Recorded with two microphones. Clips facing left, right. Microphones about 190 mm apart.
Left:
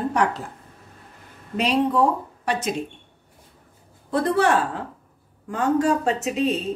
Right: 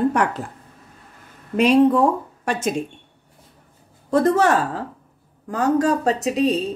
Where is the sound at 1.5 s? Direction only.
50° right (ahead or behind).